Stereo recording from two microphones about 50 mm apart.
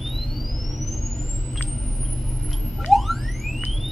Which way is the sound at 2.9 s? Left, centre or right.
Centre.